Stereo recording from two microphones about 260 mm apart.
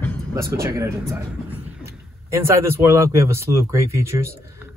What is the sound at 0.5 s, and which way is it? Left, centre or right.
Speech, centre.